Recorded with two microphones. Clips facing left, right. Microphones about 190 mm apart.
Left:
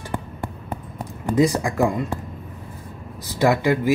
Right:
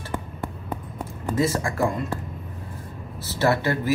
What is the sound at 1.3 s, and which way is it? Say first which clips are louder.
Speech: left 5 dB; 15° left (ahead or behind).